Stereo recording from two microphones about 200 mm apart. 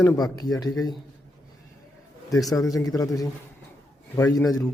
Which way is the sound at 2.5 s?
15° left (ahead or behind).